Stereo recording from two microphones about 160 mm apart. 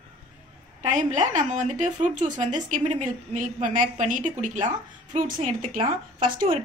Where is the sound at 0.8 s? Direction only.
50° right (ahead or behind).